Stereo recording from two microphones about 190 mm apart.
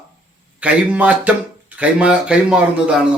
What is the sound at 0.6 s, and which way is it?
A man's voice, 5° right (ahead or behind).